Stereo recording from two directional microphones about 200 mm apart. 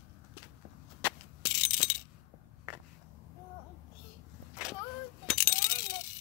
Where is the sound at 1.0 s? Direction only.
20° left (ahead or behind).